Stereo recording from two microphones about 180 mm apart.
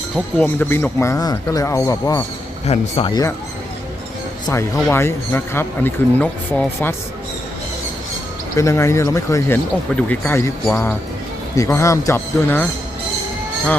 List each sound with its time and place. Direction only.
0.3 s speech: 10° left (ahead or behind)
2.6 s speech: 35° left (ahead or behind)
4.4 s speech: 15° left (ahead or behind)
8.5 s speech: 15° left (ahead or behind)